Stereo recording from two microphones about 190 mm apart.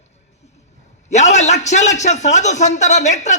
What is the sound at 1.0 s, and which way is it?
A man's voice, 35° left (ahead or behind).